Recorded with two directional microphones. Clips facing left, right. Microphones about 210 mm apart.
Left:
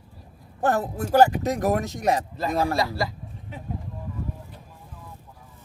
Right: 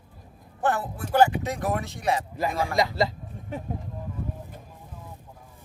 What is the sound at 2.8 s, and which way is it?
Speech, 20° right (ahead or behind).